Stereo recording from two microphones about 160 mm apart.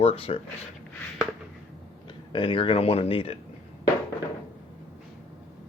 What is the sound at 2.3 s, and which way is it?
Speech, 35° left (ahead or behind).